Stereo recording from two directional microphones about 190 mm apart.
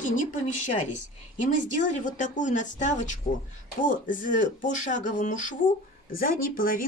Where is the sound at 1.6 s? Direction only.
40° left (ahead or behind).